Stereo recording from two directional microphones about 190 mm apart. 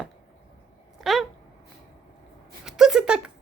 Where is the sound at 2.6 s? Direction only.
5° right (ahead or behind).